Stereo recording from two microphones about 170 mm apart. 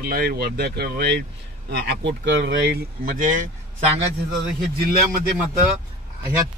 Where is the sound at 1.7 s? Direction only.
90° right.